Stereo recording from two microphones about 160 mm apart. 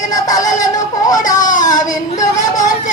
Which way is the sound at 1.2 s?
55° left (ahead or behind).